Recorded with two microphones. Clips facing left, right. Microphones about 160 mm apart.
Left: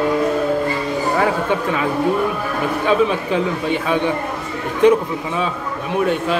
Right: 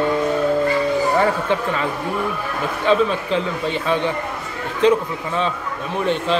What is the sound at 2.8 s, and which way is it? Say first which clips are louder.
A man's voice: even; 10° left (ahead or behind).